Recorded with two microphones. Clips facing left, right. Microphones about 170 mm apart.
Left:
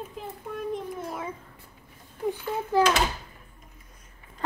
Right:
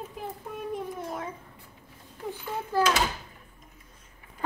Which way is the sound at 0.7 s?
Centre (ahead or behind).